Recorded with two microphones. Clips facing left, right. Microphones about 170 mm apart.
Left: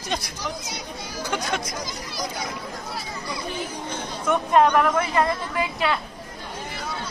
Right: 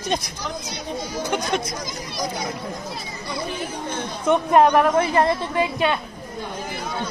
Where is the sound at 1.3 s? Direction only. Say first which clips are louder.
Right 2 dB; 20° right (ahead or behind).